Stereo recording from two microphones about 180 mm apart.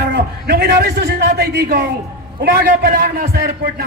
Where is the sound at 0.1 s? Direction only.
60° right (ahead or behind).